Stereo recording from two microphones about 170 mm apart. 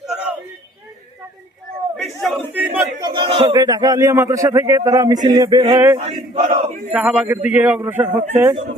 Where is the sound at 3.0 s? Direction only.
30° right (ahead or behind).